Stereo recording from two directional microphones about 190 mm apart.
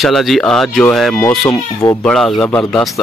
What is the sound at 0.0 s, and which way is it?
Speech, centre (ahead or behind).